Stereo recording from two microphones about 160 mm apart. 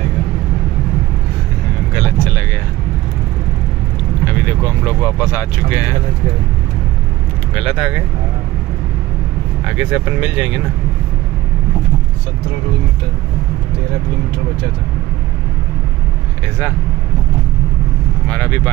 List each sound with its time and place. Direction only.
2.0 s vehicle: 15° left (ahead or behind)
4.2 s speech: 10° left (ahead or behind)
7.5 s speech: centre (ahead or behind)
9.8 s speech: 10° right (ahead or behind)
18.3 s speech: 10° left (ahead or behind)